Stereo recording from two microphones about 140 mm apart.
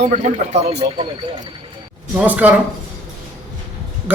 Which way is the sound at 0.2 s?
55° right (ahead or behind).